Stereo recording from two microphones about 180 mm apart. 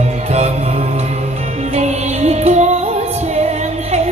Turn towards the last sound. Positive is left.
turn(degrees=-35)  # may be behind; listen again after turning